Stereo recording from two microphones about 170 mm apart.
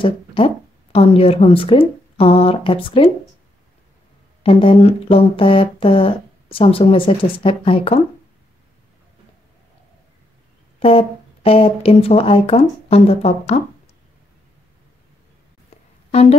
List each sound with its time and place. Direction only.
0.0 s speech: 30° left (ahead or behind)
4.4 s speech: 30° left (ahead or behind)
10.8 s speech: 35° left (ahead or behind)
16.1 s speech: 40° left (ahead or behind)